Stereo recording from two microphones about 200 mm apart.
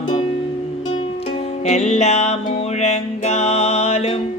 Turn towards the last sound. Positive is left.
turn(degrees=30)  # may be behind; listen again after turning